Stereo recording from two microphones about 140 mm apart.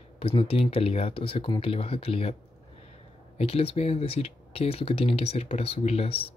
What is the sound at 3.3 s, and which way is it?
Speech, 45° left (ahead or behind).